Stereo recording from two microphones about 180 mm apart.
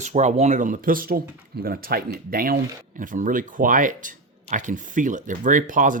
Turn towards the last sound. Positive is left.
turn(degrees=-45)  # may be behind; listen again after turning